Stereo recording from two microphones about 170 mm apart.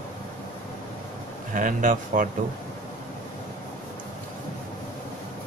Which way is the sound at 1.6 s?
50° right (ahead or behind).